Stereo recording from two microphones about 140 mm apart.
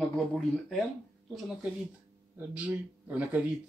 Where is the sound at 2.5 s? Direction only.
10° right (ahead or behind).